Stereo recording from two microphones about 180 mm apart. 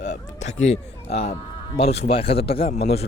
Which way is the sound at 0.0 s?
40° left (ahead or behind).